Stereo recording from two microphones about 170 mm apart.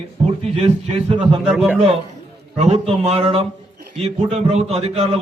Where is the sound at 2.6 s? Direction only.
40° right (ahead or behind).